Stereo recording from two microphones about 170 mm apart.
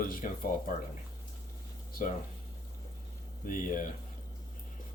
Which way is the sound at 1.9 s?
55° left (ahead or behind).